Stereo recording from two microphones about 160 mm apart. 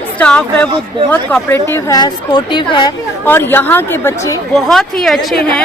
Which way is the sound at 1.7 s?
25° left (ahead or behind).